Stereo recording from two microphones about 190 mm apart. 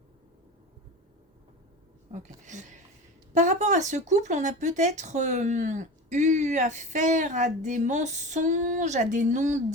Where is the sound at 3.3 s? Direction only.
40° right (ahead or behind).